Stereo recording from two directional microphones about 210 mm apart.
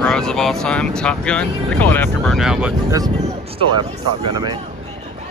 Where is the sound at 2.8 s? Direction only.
15° right (ahead or behind).